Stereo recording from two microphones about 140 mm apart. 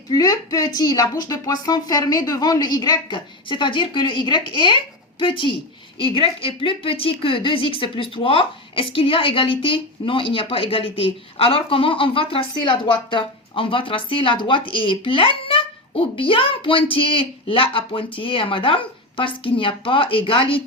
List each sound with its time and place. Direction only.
0.1 s a woman's voice: 25° left (ahead or behind)